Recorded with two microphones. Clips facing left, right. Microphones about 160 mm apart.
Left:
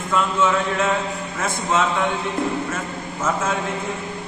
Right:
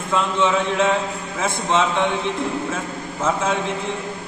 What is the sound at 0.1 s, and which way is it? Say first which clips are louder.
A man's voice: even; centre (ahead or behind).